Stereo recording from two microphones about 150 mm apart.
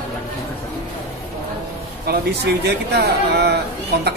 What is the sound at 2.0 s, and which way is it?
Speech, 90° right.